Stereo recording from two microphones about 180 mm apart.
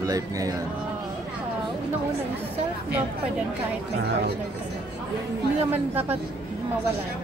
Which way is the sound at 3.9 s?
70° right (ahead or behind).